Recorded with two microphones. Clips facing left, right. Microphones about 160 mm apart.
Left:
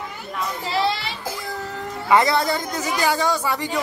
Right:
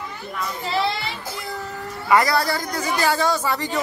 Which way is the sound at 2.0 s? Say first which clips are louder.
Left 1 dB; 20° left (ahead or behind).